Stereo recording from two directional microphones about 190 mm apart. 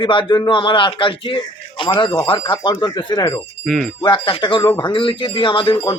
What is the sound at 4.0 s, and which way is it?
A man's voice, 25° left (ahead or behind).